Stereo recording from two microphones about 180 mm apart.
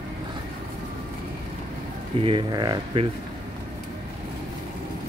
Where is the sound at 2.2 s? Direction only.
30° right (ahead or behind).